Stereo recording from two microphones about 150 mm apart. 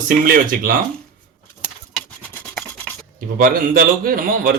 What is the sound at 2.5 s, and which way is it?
Scratch, 5° left (ahead or behind).